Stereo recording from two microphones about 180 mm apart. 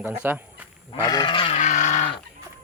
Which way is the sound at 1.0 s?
20° left (ahead or behind).